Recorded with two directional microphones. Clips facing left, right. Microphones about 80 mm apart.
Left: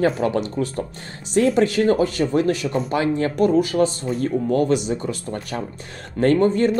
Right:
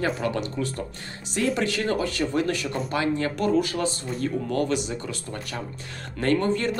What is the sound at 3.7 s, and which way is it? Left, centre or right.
Speech, left.